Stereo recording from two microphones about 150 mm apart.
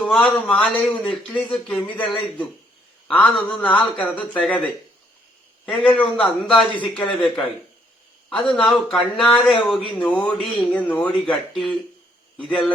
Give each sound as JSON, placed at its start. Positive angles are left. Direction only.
{"t": 0.0, "sound": "speech", "side_deg": 5}
{"t": 5.6, "sound": "speech", "side_deg": 5}